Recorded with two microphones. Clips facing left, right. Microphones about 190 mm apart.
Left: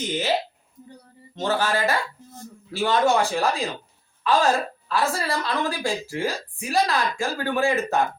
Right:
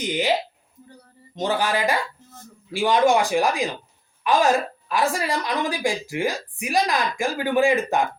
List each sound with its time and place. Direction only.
0.0 s a woman's voice: 15° right (ahead or behind)
1.4 s a woman's voice: 15° right (ahead or behind)